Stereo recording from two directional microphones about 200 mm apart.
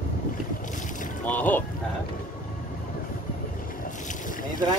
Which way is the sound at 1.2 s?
10° left (ahead or behind).